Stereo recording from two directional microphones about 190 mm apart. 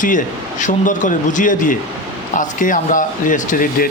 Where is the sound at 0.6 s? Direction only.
40° left (ahead or behind).